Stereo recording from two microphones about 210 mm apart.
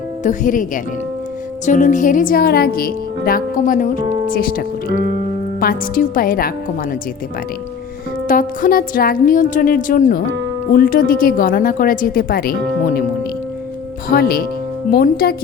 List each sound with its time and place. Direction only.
0.2 s speech: 35° left (ahead or behind)
8.3 s speech: 40° left (ahead or behind)
14.1 s speech: 45° left (ahead or behind)